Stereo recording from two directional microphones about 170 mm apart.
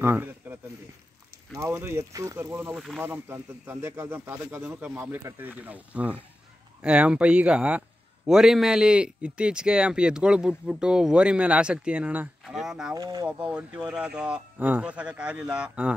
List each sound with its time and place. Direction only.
0.0 s a sound: 10° right (ahead or behind)
1.5 s speech: 15° right (ahead or behind)
2.7 s speech: centre (ahead or behind)
3.0 s speech: 15° right (ahead or behind)
12.9 s speech: 20° right (ahead or behind)
13.3 s speech: 5° right (ahead or behind)